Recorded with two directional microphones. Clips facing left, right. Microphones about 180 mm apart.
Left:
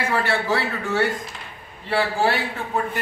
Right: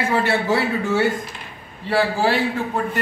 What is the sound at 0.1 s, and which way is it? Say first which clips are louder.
Speech: right 3 dB; 20° right (ahead or behind).